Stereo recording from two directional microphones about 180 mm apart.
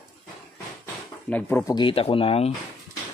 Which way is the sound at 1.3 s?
15° left (ahead or behind).